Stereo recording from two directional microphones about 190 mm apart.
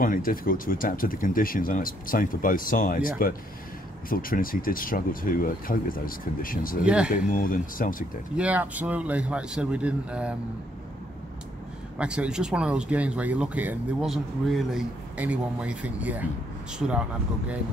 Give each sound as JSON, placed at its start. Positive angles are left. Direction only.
{"t": 0.0, "sound": "speech", "side_deg": 50}
{"t": 6.8, "sound": "speech", "side_deg": -5}
{"t": 7.1, "sound": "speech", "side_deg": 45}
{"t": 8.4, "sound": "speech", "side_deg": -10}
{"t": 12.0, "sound": "speech", "side_deg": -5}